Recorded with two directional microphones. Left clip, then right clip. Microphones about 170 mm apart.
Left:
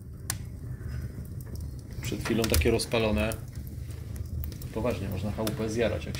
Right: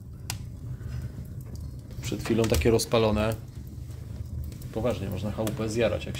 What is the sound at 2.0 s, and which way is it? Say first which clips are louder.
Speech: right 2 dB; 30° right (ahead or behind).